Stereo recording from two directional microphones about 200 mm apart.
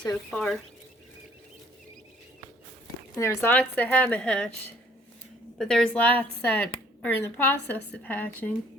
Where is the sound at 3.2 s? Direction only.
10° left (ahead or behind).